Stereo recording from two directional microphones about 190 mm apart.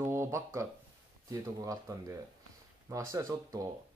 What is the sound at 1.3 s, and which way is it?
Speech, 15° right (ahead or behind).